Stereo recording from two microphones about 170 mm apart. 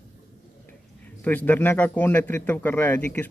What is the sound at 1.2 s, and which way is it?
A man's voice, 10° left (ahead or behind).